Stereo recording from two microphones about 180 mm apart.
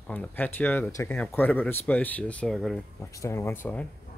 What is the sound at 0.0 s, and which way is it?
Speech, 10° left (ahead or behind).